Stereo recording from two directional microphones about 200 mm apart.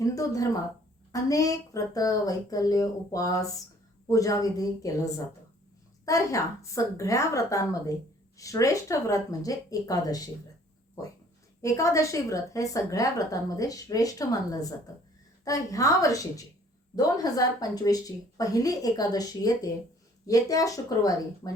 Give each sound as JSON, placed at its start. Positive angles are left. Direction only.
{"t": 0.0, "sound": "a woman's voice", "side_deg": 15}
{"t": 11.6, "sound": "a woman's voice", "side_deg": 15}